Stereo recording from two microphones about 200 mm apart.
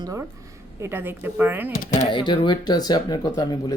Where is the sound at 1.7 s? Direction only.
40° left (ahead or behind).